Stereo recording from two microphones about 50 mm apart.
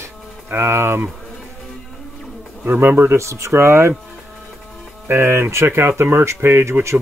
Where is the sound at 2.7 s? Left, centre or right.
Right.